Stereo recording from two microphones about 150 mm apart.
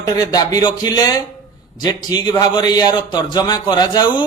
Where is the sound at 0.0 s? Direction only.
25° left (ahead or behind).